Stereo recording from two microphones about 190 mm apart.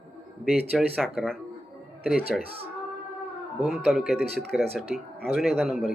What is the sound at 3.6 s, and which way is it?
Speech, centre (ahead or behind).